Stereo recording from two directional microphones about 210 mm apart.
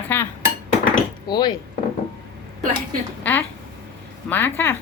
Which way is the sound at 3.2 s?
10° left (ahead or behind).